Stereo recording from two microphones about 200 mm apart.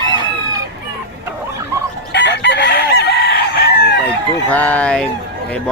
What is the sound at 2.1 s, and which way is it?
Chicken, 60° left (ahead or behind).